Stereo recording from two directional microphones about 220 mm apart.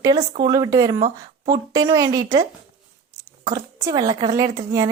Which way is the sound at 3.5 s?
15° right (ahead or behind).